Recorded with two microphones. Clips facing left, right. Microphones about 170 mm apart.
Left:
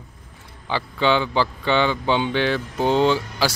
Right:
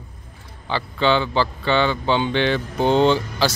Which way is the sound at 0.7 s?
10° left (ahead or behind).